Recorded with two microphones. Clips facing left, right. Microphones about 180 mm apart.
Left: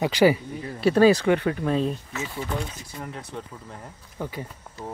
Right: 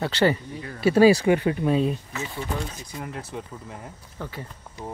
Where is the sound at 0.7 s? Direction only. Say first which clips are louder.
Right 1 dB; 5° right (ahead or behind).